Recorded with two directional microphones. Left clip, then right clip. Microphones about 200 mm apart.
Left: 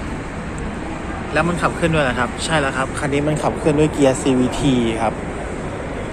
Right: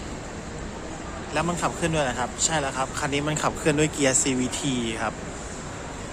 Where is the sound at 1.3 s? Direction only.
20° right (ahead or behind).